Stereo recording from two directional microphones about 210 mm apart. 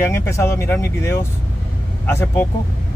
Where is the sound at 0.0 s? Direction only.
10° left (ahead or behind).